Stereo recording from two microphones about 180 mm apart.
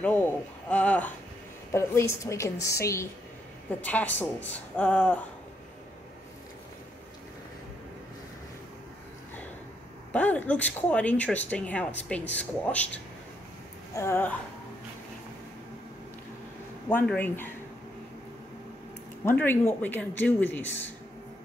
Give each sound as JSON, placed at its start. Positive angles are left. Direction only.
{"t": 0.0, "sound": "a sound", "side_deg": 10}
{"t": 1.7, "sound": "speech", "side_deg": 15}
{"t": 10.1, "sound": "speech", "side_deg": 10}
{"t": 16.9, "sound": "speech", "side_deg": 10}
{"t": 19.2, "sound": "speech", "side_deg": 10}